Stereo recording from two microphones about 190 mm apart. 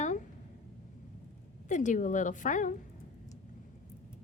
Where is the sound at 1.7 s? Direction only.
40° left (ahead or behind).